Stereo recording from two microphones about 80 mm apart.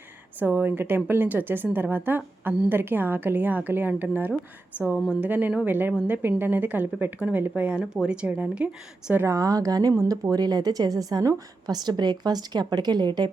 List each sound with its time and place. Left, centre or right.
0.3 s a woman's voice: right
9.2 s a woman's voice: right